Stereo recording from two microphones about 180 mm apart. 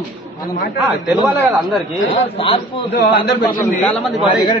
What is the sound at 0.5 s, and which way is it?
Speech, 55° left (ahead or behind).